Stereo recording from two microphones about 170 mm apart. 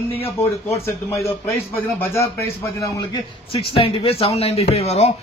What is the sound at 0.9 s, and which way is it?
A man's voice, 15° left (ahead or behind).